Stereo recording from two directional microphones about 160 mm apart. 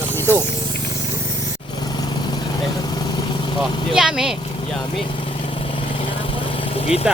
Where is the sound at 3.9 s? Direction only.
5° right (ahead or behind).